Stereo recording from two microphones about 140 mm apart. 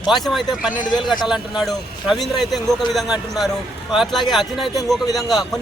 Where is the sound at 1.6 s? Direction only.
Centre (ahead or behind).